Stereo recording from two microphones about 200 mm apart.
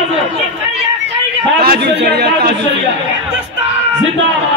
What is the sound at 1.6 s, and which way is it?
Speech, 50° right (ahead or behind).